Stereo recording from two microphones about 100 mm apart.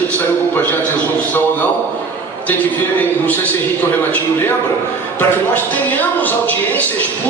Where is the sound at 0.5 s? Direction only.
20° left (ahead or behind).